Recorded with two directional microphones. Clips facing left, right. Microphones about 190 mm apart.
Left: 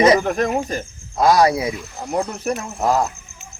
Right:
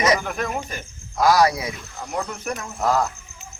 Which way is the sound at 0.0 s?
35° left (ahead or behind).